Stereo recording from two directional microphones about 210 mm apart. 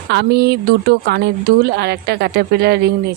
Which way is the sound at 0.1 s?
50° right (ahead or behind).